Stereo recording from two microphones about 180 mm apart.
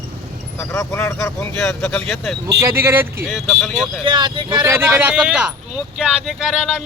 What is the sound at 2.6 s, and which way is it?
Speech, 15° right (ahead or behind).